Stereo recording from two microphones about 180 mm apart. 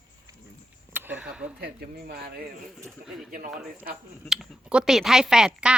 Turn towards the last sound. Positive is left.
turn(degrees=-5)  # may be behind; listen again after turning